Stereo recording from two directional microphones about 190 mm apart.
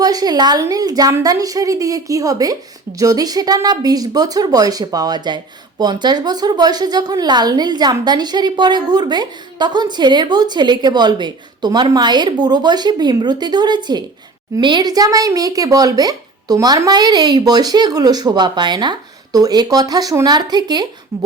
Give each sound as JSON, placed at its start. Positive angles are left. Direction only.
{"t": 0.0, "sound": "a woman's voice", "side_deg": -20}